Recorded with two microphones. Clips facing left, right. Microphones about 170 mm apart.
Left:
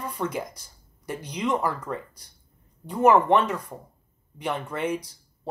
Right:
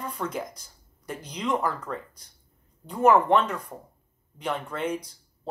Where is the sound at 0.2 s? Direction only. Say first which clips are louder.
Left 3 dB; 15° left (ahead or behind).